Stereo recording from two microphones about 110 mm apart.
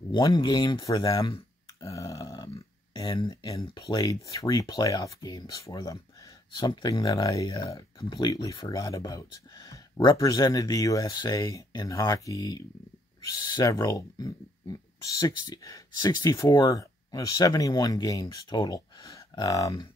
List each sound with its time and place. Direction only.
0.1 s speech: 40° left (ahead or behind)
1.8 s a sound: 30° left (ahead or behind)
3.8 s speech: 35° left (ahead or behind)
6.5 s speech: 40° left (ahead or behind)